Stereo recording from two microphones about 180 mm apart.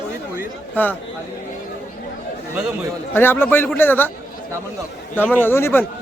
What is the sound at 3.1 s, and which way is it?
Speech, 10° left (ahead or behind).